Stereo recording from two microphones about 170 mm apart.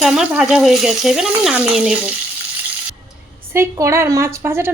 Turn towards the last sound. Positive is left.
turn(degrees=-15)  # may be behind; listen again after turning